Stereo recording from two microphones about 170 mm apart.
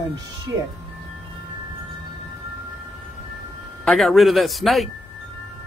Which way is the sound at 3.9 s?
Centre (ahead or behind).